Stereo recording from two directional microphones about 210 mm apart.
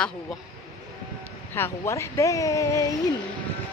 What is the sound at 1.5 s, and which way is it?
Speech, 10° left (ahead or behind).